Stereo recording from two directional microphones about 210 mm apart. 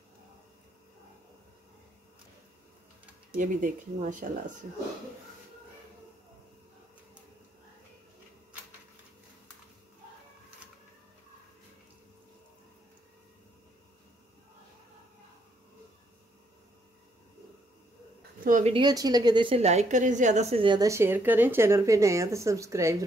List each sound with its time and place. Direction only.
3.3 s speech: 40° right (ahead or behind)
18.4 s a sound: 40° right (ahead or behind)
18.7 s a woman's voice: 20° right (ahead or behind)